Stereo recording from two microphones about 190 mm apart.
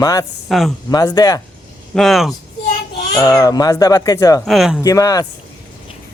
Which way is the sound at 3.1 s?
20° left (ahead or behind).